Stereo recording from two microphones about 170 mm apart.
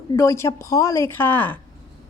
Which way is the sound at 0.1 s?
15° left (ahead or behind).